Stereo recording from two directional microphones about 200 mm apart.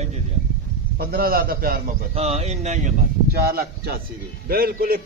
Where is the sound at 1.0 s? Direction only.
50° right (ahead or behind).